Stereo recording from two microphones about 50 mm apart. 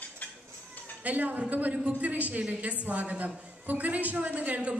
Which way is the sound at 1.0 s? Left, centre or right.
Right.